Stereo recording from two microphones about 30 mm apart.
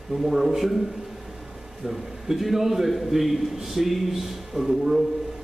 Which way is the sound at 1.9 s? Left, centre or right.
Centre.